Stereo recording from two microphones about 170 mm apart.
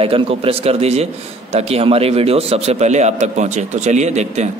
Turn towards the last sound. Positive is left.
turn(degrees=-40)  # may be behind; listen again after turning